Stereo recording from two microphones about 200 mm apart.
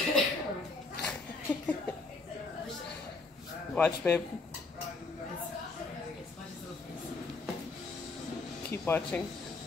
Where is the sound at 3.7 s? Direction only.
10° left (ahead or behind).